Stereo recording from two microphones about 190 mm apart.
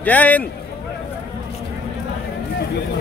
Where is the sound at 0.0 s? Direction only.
10° left (ahead or behind).